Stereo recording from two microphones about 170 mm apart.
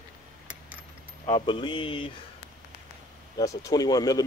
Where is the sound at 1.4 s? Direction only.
30° left (ahead or behind).